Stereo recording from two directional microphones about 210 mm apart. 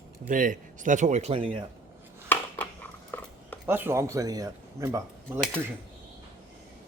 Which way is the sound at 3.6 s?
10° right (ahead or behind).